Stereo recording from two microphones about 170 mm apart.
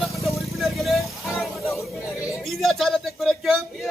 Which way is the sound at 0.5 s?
Centre (ahead or behind).